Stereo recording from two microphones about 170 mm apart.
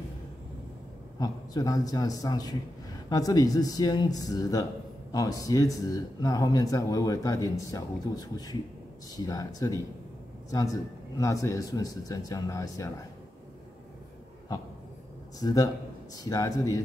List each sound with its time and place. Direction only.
1.2 s a man's voice: 20° left (ahead or behind)
14.5 s a man's voice: 20° left (ahead or behind)